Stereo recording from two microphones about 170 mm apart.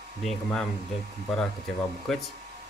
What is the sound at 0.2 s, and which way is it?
Speech, 5° left (ahead or behind).